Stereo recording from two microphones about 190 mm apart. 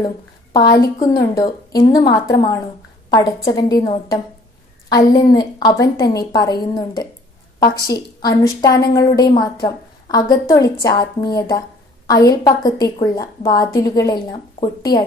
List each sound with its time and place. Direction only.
0.0 s a woman's voice: 20° left (ahead or behind)